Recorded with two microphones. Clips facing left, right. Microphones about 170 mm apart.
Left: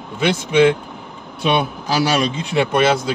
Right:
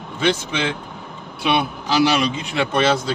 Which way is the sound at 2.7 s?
10° left (ahead or behind).